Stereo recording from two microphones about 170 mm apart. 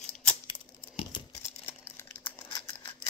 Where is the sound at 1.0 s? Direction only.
25° left (ahead or behind).